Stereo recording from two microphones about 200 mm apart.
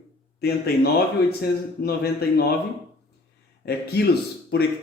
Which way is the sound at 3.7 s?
55° left (ahead or behind).